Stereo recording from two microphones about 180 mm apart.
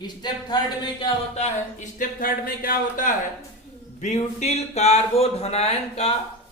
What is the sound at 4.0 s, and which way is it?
Speech, 40° left (ahead or behind).